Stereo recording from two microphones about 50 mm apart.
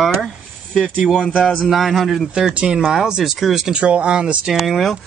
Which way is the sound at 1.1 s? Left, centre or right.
Centre.